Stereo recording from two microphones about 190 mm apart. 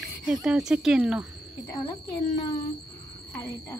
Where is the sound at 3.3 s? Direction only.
20° left (ahead or behind).